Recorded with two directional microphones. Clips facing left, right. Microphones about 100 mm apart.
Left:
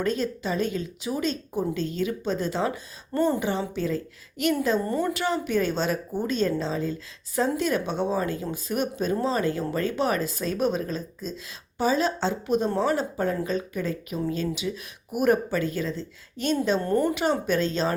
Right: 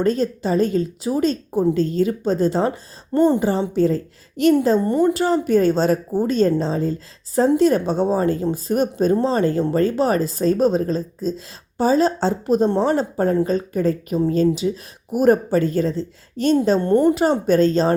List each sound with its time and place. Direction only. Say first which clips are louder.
0.0 s a woman's voice: right 7 dB; 40° right (ahead or behind)
3.1 s a woman's voice: right 8 dB; 25° right (ahead or behind)
3.4 s a woman's voice: right 9 dB; 35° right (ahead or behind)
4.8 s a woman's voice: right 9 dB; 25° right (ahead or behind)
5.1 s a woman's voice: right 8 dB; 35° right (ahead or behind)
16.9 s a woman's voice: right 9 dB; 25° right (ahead or behind)
17.2 s a woman's voice: right 8 dB; 40° right (ahead or behind)